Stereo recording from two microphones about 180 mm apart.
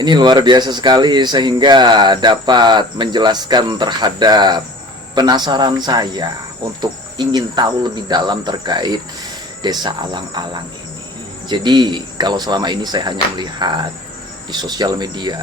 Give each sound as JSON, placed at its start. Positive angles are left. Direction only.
{"t": 0.0, "sound": "speech", "side_deg": -25}